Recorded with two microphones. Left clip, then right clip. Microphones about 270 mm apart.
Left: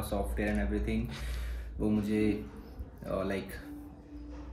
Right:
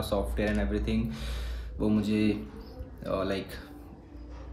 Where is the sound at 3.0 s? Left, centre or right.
Centre.